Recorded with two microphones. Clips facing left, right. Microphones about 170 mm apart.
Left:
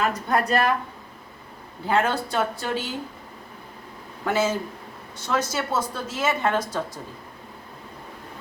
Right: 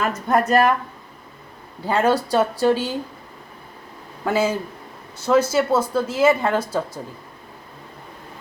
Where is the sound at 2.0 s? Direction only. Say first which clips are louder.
Right 7 dB; 35° right (ahead or behind).